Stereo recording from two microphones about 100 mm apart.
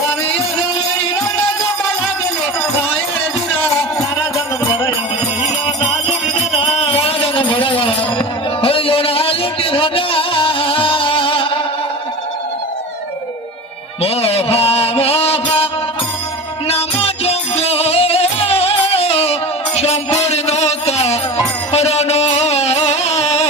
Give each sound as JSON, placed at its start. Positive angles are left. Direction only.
{"t": 6.6, "sound": "music", "side_deg": 75}
{"t": 14.0, "sound": "a sound", "side_deg": 75}
{"t": 16.6, "sound": "music", "side_deg": 85}